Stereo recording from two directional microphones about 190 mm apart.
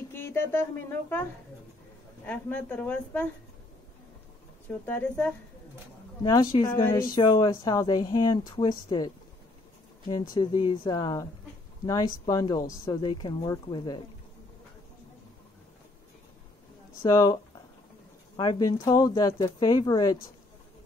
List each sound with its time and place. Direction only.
0.1 s speech: 10° left (ahead or behind)
2.2 s speech: 10° left (ahead or behind)
4.6 s speech: 10° left (ahead or behind)
6.2 s speech: 15° left (ahead or behind)
10.3 s speech: 25° left (ahead or behind)
17.0 s speech: 20° left (ahead or behind)